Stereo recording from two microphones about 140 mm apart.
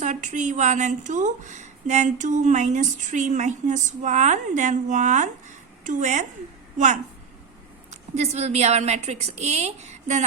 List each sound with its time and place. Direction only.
0.0 s a woman's voice: 60° right (ahead or behind)